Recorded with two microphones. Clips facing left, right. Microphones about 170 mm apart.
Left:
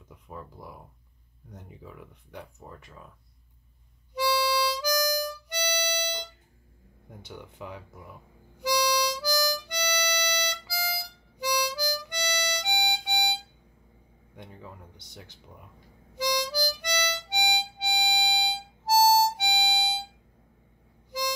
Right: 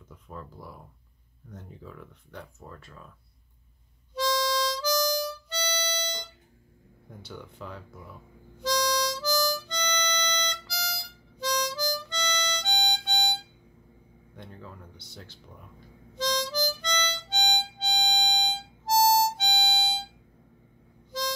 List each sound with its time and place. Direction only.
0.1 s speech: 15° left (ahead or behind)
4.1 s harmonica: 10° left (ahead or behind)
14.3 s speech: 15° left (ahead or behind)
16.2 s harmonica: 10° left (ahead or behind)